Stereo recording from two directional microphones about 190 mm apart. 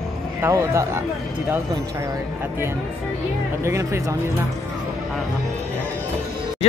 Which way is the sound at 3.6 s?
15° right (ahead or behind).